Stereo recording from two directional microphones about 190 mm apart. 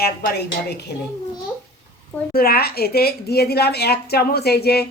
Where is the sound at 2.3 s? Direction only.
50° left (ahead or behind).